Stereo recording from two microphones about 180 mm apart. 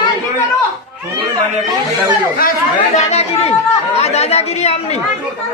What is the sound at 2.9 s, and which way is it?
Speech, 35° left (ahead or behind).